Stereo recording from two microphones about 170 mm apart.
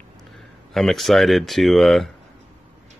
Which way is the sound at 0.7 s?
Centre (ahead or behind).